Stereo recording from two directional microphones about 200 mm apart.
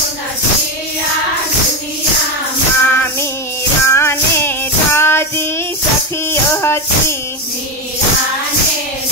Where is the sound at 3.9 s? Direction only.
15° left (ahead or behind).